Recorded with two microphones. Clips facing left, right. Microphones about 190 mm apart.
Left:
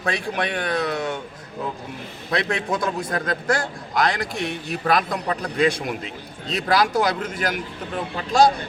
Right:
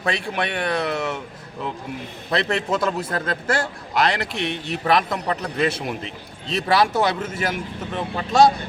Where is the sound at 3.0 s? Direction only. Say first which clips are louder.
Even; 30° right (ahead or behind).